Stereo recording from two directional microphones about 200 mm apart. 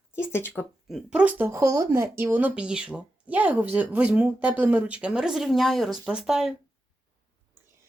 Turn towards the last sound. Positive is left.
turn(degrees=0)  # may be behind; listen again after turning